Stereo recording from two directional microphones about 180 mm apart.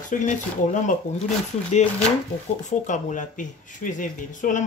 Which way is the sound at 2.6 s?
45° left (ahead or behind).